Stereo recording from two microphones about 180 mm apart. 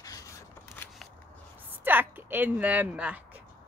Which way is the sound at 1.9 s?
10° right (ahead or behind).